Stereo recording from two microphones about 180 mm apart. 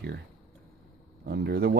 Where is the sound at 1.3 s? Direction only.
65° right (ahead or behind).